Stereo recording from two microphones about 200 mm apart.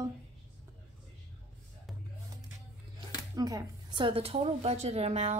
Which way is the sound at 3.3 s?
20° right (ahead or behind).